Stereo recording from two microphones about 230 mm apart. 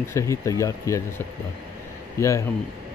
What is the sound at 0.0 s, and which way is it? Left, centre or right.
A man's voice, centre.